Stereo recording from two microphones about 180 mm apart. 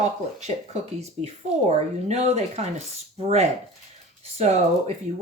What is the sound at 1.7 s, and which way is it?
Speech, 40° right (ahead or behind).